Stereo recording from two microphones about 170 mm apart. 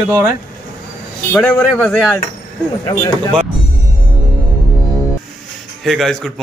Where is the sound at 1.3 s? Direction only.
10° left (ahead or behind).